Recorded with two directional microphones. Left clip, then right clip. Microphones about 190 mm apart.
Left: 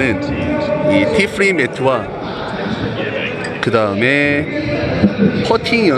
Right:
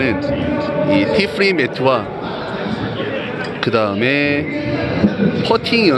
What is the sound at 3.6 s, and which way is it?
Speech, centre (ahead or behind).